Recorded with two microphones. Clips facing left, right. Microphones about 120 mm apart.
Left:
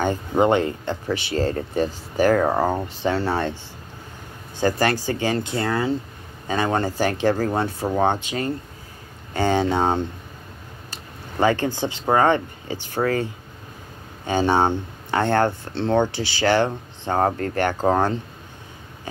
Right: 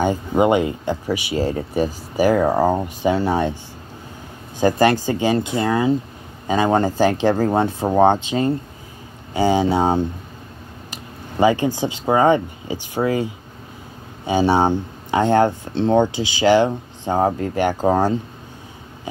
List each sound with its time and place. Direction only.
0.0 s speech: 10° right (ahead or behind)
4.6 s speech: 20° right (ahead or behind)